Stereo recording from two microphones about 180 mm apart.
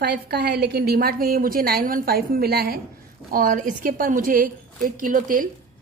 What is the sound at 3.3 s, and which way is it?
A woman's voice, 50° right (ahead or behind).